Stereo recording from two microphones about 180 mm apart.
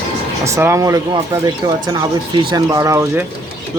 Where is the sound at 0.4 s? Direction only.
15° right (ahead or behind).